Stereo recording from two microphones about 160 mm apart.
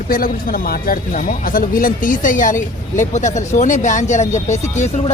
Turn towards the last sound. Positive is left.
turn(degrees=45)  # may be behind; listen again after turning